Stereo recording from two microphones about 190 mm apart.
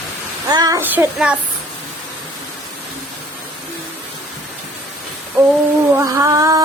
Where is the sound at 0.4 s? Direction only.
20° right (ahead or behind).